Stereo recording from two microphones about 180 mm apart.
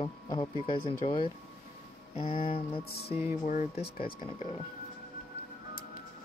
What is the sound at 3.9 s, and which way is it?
Speech, 30° left (ahead or behind).